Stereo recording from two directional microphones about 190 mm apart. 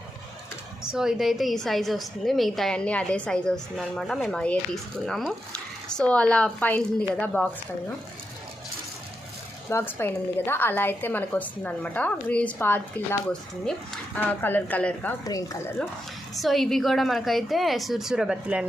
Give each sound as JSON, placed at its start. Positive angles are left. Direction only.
{"t": 0.9, "sound": "a woman's voice", "side_deg": -5}
{"t": 9.6, "sound": "a woman's voice", "side_deg": 10}
{"t": 15.2, "sound": "a woman's voice", "side_deg": 15}
{"t": 16.3, "sound": "a woman's voice", "side_deg": 0}